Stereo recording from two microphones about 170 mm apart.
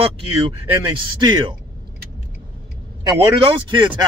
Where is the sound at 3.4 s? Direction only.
30° right (ahead or behind).